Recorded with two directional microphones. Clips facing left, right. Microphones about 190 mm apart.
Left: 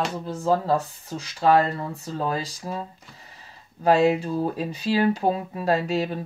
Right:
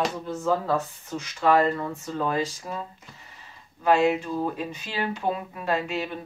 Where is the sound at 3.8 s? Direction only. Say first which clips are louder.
Left 2 dB; 35° left (ahead or behind).